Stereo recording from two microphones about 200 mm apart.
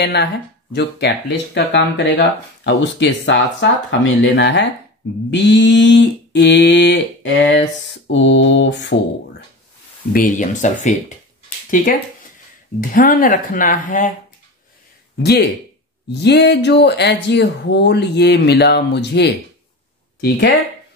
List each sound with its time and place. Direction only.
0.0 s speech: 55° left (ahead or behind)
10.1 s speech: 40° left (ahead or behind)
15.2 s speech: 55° left (ahead or behind)